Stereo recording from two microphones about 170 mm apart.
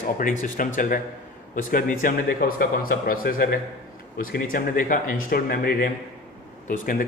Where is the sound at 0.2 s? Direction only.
50° left (ahead or behind).